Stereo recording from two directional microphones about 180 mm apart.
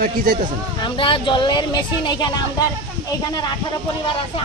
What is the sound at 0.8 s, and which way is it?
Speech, 25° left (ahead or behind).